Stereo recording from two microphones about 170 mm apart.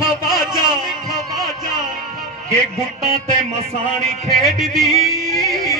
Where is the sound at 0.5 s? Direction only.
25° right (ahead or behind).